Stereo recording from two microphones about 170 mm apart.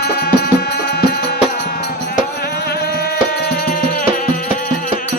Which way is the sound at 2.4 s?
65° left (ahead or behind).